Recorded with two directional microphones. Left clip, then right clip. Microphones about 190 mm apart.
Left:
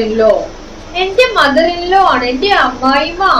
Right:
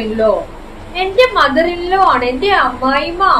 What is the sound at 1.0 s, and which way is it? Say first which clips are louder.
A woman's voice: left 1 dB; 15° right (ahead or behind).